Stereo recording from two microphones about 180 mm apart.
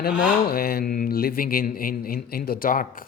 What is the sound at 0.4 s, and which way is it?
Speech, 55° left (ahead or behind).